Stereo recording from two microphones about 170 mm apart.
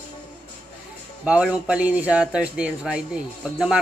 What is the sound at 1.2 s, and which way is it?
Speech, 5° right (ahead or behind).